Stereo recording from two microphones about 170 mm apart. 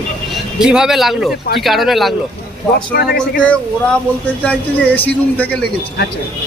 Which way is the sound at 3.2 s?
5° left (ahead or behind).